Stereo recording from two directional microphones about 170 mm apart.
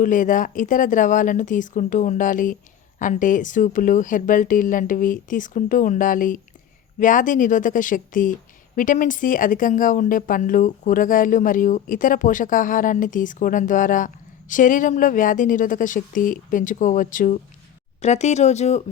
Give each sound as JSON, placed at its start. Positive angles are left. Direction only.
{"t": 0.0, "sound": "speech", "side_deg": 50}